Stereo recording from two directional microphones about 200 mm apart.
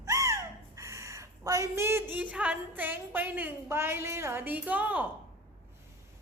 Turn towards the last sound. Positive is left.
turn(degrees=-10)  # may be behind; listen again after turning